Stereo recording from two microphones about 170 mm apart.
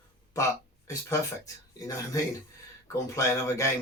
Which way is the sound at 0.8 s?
20° left (ahead or behind).